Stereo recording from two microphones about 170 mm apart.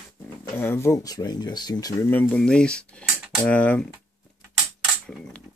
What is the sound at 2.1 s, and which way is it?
Speech, 10° left (ahead or behind).